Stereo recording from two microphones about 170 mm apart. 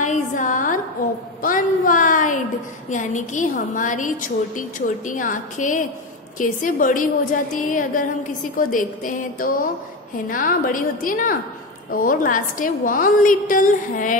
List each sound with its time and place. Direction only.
0.0 s music: 45° left (ahead or behind)
1.4 s a sound: 50° left (ahead or behind)
2.9 s a woman's voice: 45° left (ahead or behind)